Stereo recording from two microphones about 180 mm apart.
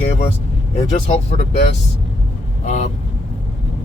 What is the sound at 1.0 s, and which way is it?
Speech, 35° left (ahead or behind).